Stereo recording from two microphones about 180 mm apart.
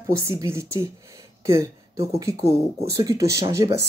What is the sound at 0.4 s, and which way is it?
Speech, 15° right (ahead or behind).